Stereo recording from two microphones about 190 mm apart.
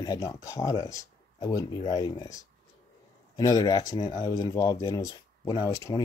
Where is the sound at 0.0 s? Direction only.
20° left (ahead or behind).